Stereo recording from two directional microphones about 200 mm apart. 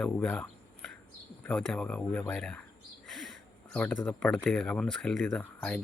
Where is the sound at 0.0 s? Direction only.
5° left (ahead or behind).